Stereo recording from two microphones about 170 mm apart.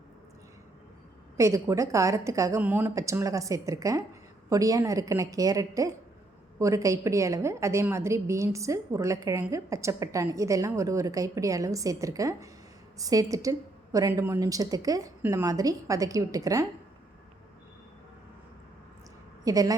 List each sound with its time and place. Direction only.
1.4 s a woman's voice: 15° right (ahead or behind)
19.5 s a woman's voice: 20° right (ahead or behind)